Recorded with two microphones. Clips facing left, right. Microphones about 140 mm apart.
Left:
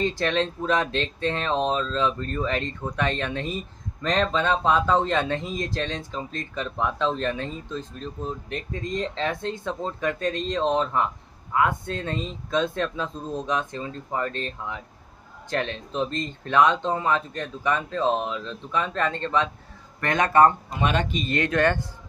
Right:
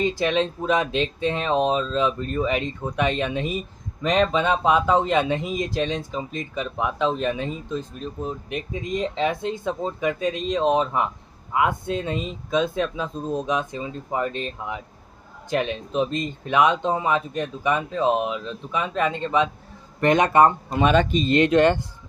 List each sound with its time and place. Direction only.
0.0 s speech: 10° right (ahead or behind)